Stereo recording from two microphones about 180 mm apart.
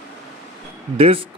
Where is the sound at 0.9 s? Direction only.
30° right (ahead or behind).